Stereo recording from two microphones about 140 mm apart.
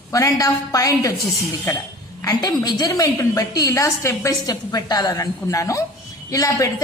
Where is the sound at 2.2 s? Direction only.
25° left (ahead or behind).